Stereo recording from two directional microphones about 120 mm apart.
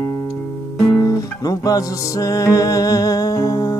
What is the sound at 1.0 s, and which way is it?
Music, 25° left (ahead or behind).